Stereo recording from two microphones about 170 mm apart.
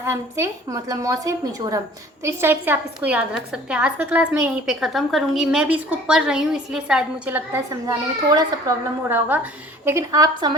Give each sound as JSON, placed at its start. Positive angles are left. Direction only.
{"t": 0.0, "sound": "a woman's voice", "side_deg": -15}
{"t": 9.0, "sound": "a woman's voice", "side_deg": -10}